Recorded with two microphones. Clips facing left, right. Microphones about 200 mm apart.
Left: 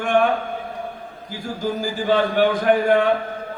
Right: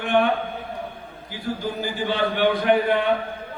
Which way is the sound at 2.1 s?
45° left (ahead or behind).